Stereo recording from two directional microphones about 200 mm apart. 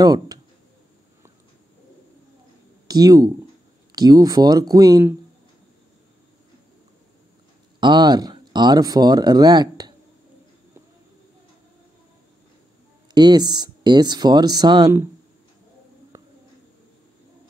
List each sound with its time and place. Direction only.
0.0 s speech: 20° right (ahead or behind)
2.9 s speech: 20° right (ahead or behind)
7.8 s speech: 20° right (ahead or behind)
13.1 s speech: 20° right (ahead or behind)